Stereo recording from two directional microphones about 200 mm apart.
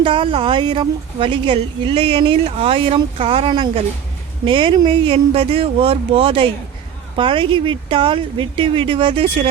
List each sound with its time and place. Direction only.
0.0 s speech: 25° right (ahead or behind)